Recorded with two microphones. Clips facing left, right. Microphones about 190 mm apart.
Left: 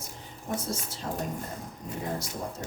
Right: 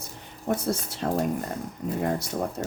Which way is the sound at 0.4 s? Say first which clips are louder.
Right 6 dB; 65° right (ahead or behind).